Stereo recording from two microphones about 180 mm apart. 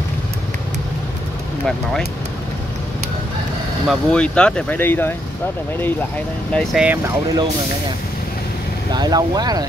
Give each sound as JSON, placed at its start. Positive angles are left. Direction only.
{"t": 3.8, "sound": "speech", "side_deg": 0}
{"t": 8.9, "sound": "speech", "side_deg": -20}